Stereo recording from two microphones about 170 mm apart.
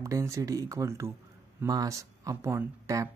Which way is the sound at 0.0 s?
20° right (ahead or behind).